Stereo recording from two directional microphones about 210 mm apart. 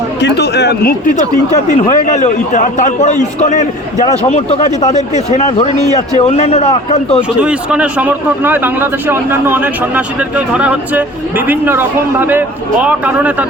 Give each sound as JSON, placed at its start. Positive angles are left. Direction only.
{"t": 0.2, "sound": "speech", "side_deg": 55}
{"t": 1.5, "sound": "a man's voice", "side_deg": 35}
{"t": 7.4, "sound": "speech", "side_deg": -5}